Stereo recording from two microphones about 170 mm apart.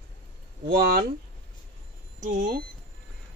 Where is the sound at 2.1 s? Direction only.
50° right (ahead or behind).